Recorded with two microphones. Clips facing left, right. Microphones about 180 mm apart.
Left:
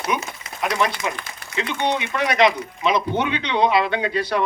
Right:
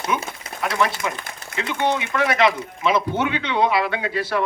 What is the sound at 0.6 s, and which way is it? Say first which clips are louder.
A man's voice: even; 15° left (ahead or behind).